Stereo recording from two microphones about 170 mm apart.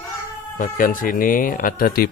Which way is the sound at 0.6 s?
55° left (ahead or behind).